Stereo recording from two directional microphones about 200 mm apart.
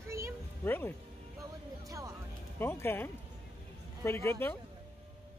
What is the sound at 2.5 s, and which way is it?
Speech, 10° left (ahead or behind).